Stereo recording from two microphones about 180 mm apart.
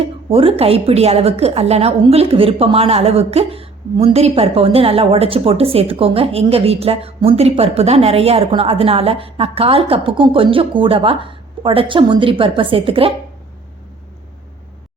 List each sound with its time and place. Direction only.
0.0 s a woman's voice: 30° right (ahead or behind)